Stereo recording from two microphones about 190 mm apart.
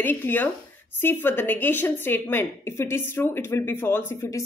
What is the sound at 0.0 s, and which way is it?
A woman's voice, 10° left (ahead or behind).